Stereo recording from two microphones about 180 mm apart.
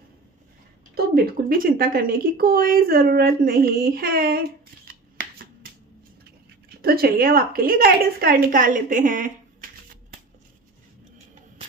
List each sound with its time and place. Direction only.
0.9 s speech: 60° right (ahead or behind)
6.8 s a woman's voice: 55° right (ahead or behind)